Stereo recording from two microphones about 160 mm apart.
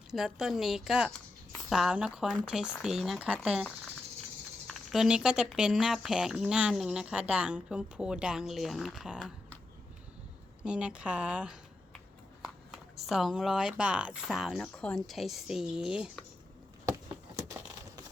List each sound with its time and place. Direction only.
0.1 s speech: 5° right (ahead or behind)
10.6 s a woman's voice: 5° right (ahead or behind)
16.8 s a sound: 20° right (ahead or behind)